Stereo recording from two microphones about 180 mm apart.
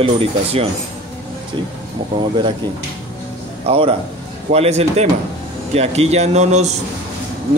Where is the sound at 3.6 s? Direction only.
35° right (ahead or behind).